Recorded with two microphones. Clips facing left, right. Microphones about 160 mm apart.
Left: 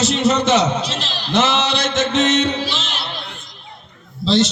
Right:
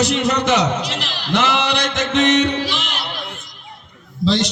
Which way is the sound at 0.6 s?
15° right (ahead or behind).